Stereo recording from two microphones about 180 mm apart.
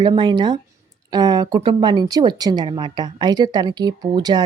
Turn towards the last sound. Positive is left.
turn(degrees=-25)  # may be behind; listen again after turning